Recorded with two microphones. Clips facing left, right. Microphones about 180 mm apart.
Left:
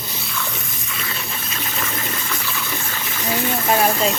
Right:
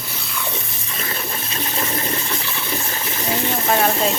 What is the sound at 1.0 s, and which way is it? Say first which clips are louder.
Water: right 4 dB; 35° right (ahead or behind).